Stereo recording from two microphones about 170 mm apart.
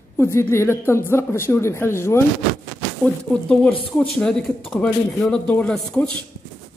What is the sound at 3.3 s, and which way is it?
Speech, 5° left (ahead or behind).